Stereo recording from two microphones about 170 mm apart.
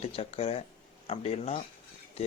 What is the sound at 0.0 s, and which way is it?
Speech, 35° left (ahead or behind).